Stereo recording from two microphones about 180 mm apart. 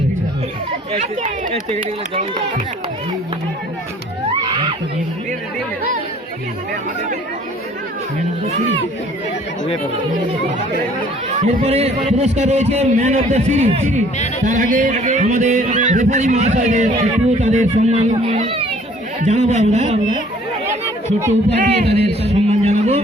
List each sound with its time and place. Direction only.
0.9 s speech: 45° right (ahead or behind)
11.4 s a man's voice: 35° right (ahead or behind)
21.6 s a man's voice: 35° right (ahead or behind)